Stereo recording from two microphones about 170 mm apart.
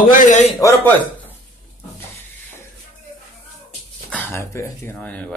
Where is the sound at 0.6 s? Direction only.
15° left (ahead or behind).